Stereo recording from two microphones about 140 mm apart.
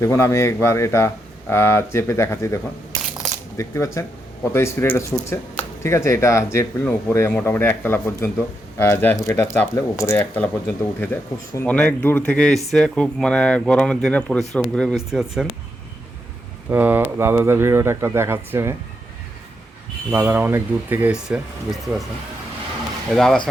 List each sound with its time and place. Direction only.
0.0 s speech: 20° left (ahead or behind)
3.6 s speech: 20° left (ahead or behind); by 15.4 s 5° right (ahead or behind)
16.6 s speech: 15° right (ahead or behind)
20.1 s speech: 15° right (ahead or behind)
23.1 s speech: centre (ahead or behind)